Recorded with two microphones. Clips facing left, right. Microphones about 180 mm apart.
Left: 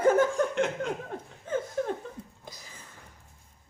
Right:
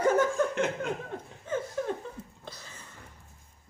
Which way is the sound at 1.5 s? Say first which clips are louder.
Left 1 dB; 50° left (ahead or behind).